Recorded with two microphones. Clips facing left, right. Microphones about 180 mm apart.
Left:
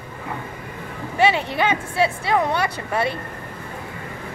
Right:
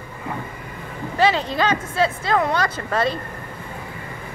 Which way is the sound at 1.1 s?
20° left (ahead or behind).